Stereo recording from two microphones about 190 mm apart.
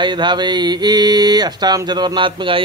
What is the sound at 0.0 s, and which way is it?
A man's voice, 25° right (ahead or behind).